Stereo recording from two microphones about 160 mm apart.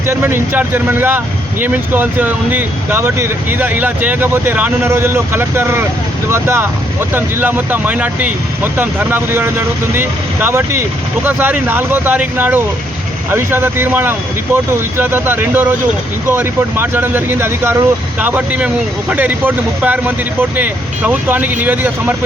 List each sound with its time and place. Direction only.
0.1 s speech: 15° right (ahead or behind)